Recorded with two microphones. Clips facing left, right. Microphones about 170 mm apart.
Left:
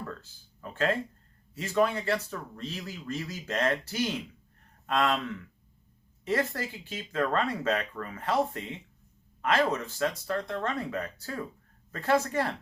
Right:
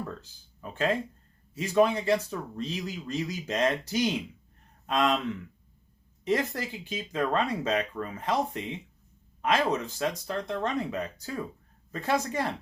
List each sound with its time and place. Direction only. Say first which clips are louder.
0.2 s speech: right 1 dB; 15° right (ahead or behind)
6.2 s speech: right 1 dB; 20° right (ahead or behind)